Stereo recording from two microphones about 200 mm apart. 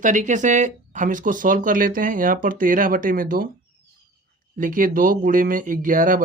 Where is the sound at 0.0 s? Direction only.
40° right (ahead or behind).